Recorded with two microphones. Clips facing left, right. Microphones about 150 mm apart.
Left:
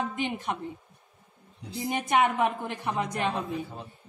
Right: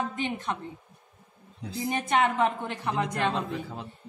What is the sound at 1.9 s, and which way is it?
Speech, 15° left (ahead or behind).